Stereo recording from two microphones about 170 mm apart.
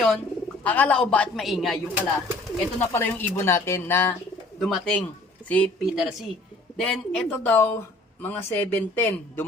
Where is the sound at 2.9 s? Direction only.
15° left (ahead or behind).